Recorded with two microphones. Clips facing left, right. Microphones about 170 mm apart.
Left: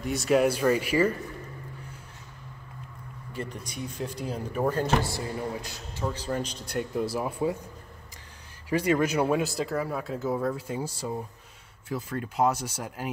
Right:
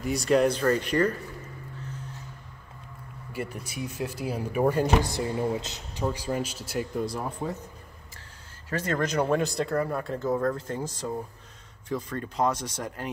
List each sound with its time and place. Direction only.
0.0 s speech: centre (ahead or behind)
3.3 s speech: 5° right (ahead or behind)
6.0 s speech: 10° right (ahead or behind); by 7.5 s 10° left (ahead or behind)
8.6 s speech: 10° left (ahead or behind)